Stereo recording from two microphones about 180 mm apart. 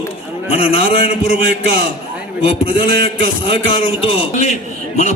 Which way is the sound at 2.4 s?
35° left (ahead or behind).